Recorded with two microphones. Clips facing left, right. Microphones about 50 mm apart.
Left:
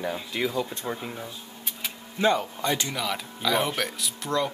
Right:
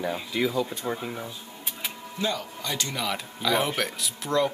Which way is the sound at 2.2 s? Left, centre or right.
Left.